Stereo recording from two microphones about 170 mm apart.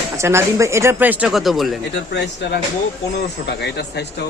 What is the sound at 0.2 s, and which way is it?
Speech, 15° right (ahead or behind).